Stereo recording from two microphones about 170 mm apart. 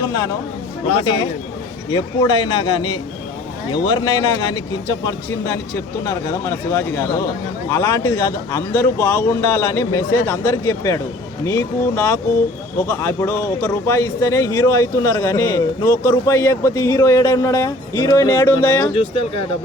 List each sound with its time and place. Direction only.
0.0 s a man's voice: 20° left (ahead or behind)
1.9 s a man's voice: 25° left (ahead or behind)
18.9 s speech: 30° left (ahead or behind)